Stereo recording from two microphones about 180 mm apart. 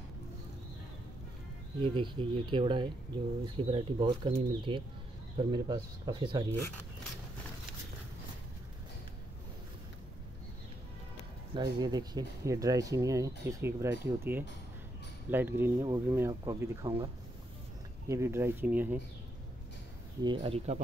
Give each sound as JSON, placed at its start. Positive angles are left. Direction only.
{"t": 1.8, "sound": "speech", "side_deg": -30}
{"t": 11.5, "sound": "speech", "side_deg": -20}
{"t": 18.0, "sound": "speech", "side_deg": -15}
{"t": 20.2, "sound": "speech", "side_deg": -30}